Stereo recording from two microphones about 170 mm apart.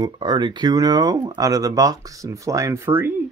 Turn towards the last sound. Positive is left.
turn(degrees=-15)  # may be behind; listen again after turning